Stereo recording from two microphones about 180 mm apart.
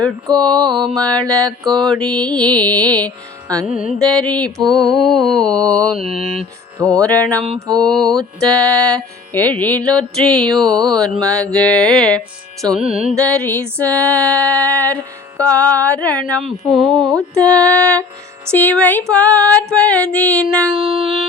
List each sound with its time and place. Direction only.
0.0 s music: 5° left (ahead or behind)
4.0 s music: 5° left (ahead or behind)
6.7 s music: 20° right (ahead or behind)
7.0 s music: 5° left (ahead or behind)
7.4 s mantra: 30° right (ahead or behind)
7.8 s music: 5° left (ahead or behind)
20.7 s music: 5° right (ahead or behind)